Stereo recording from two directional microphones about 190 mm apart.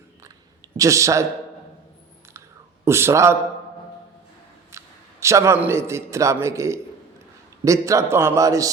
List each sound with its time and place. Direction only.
0.8 s a man's voice: 15° right (ahead or behind)
2.8 s a man's voice: 15° right (ahead or behind)
4.7 s a sound: 15° right (ahead or behind)
5.2 s a man's voice: 15° right (ahead or behind)